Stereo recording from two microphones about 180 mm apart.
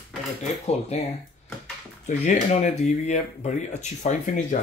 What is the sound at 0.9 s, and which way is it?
Speech, 40° left (ahead or behind).